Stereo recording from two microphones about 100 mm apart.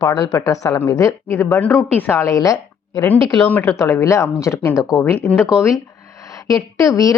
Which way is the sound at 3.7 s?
30° left (ahead or behind).